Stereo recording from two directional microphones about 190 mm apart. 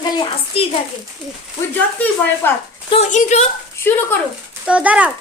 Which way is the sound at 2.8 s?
35° left (ahead or behind).